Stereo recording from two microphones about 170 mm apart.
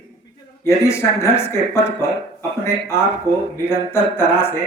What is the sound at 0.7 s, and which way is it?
Speech, 15° left (ahead or behind).